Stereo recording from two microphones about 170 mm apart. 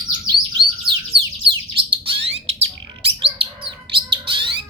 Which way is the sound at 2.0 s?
30° right (ahead or behind).